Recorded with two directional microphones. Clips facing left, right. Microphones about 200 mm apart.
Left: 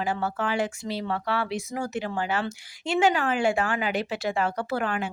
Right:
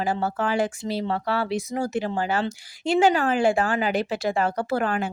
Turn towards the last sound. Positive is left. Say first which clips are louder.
# right 3 dB
turn(degrees=-40)  # may be behind; listen again after turning